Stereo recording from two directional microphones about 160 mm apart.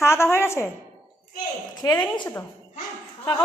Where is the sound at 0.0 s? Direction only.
15° left (ahead or behind).